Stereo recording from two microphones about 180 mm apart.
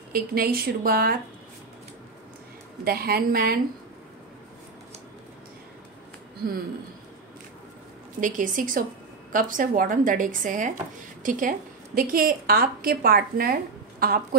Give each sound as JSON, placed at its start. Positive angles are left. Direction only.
{"t": 0.1, "sound": "speech", "side_deg": -55}
{"t": 2.8, "sound": "speech", "side_deg": -55}
{"t": 8.2, "sound": "a woman's voice", "side_deg": -45}